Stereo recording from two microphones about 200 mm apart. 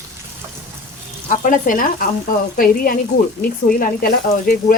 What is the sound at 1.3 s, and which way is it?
Speech, 40° left (ahead or behind).